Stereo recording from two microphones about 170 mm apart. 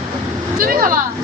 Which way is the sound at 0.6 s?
55° right (ahead or behind).